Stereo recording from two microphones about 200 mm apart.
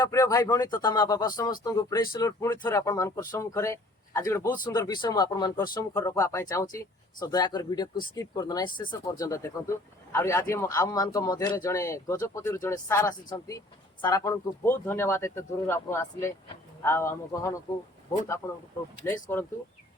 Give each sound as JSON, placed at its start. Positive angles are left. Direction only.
{"t": 0.0, "sound": "speech", "side_deg": 15}
{"t": 4.4, "sound": "speech", "side_deg": 45}
{"t": 4.7, "sound": "speech", "side_deg": 20}